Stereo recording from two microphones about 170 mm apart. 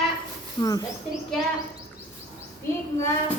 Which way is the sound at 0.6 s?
20° left (ahead or behind).